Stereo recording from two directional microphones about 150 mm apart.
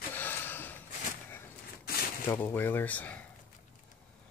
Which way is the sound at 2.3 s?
15° left (ahead or behind).